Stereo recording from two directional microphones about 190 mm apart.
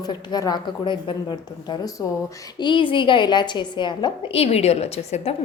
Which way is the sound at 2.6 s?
25° left (ahead or behind).